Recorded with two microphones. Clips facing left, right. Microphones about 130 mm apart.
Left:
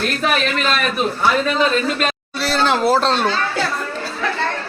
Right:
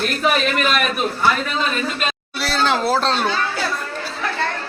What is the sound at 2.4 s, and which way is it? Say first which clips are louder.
Speech: left 2 dB; centre (ahead or behind).